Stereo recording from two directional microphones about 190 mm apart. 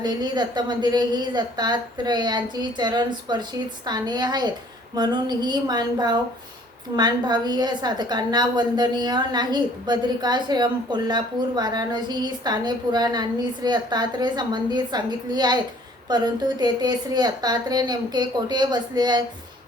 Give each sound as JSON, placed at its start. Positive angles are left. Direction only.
{"t": 0.0, "sound": "a woman's voice", "side_deg": -20}